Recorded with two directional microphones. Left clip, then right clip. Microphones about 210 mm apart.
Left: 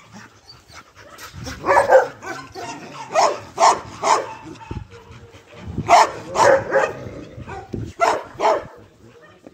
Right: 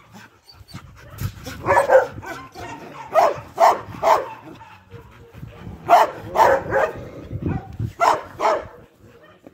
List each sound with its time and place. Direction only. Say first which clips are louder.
1.6 s dog: left 1 dB; 5° right (ahead or behind)
2.2 s dog: left 3 dB; 35° right (ahead or behind)
5.9 s dog: left 1 dB; 30° right (ahead or behind)
8.0 s dog: even; 25° right (ahead or behind)